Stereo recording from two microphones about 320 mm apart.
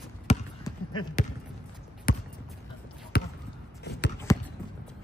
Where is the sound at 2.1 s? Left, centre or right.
Left.